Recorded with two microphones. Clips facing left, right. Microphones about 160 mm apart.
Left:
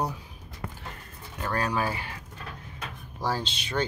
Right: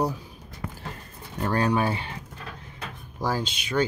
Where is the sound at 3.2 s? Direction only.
10° right (ahead or behind).